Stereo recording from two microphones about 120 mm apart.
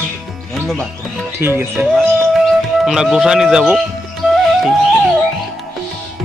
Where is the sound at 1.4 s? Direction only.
20° right (ahead or behind).